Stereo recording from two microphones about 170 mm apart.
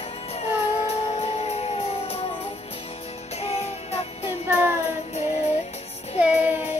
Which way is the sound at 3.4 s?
35° left (ahead or behind).